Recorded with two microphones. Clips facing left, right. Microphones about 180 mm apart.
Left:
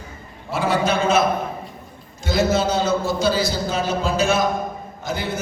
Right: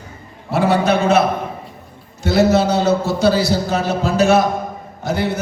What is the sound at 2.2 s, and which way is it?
A man's voice, 70° right (ahead or behind).